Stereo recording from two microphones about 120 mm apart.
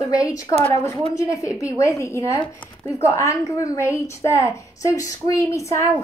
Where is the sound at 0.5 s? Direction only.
20° left (ahead or behind).